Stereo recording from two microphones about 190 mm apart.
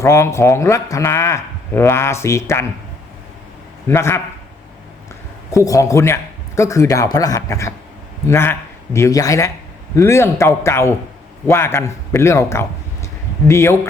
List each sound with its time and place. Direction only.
0.0 s speech: 15° left (ahead or behind)
3.8 s speech: 15° left (ahead or behind)
5.5 s speech: 15° left (ahead or behind)